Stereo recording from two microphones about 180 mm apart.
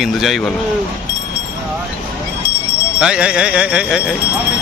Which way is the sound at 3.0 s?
5° right (ahead or behind).